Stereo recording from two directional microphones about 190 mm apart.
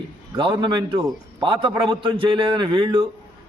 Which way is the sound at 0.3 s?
25° right (ahead or behind).